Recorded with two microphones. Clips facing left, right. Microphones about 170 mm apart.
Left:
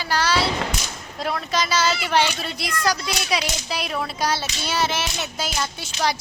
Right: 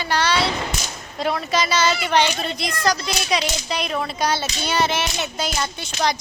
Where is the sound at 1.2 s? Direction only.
Centre (ahead or behind).